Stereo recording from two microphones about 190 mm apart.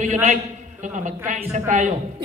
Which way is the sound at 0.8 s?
40° right (ahead or behind).